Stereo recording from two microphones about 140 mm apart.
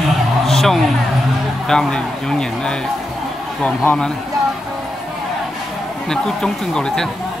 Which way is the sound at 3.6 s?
10° left (ahead or behind).